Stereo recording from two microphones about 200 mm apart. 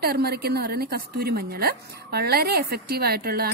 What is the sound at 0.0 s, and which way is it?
A woman's voice, 50° right (ahead or behind).